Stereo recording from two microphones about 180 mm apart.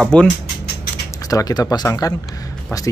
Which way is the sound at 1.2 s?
20° left (ahead or behind).